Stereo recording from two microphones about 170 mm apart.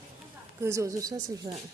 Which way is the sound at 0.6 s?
20° right (ahead or behind).